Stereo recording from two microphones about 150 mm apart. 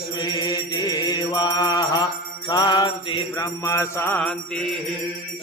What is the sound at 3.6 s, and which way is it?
Mantra, 20° left (ahead or behind).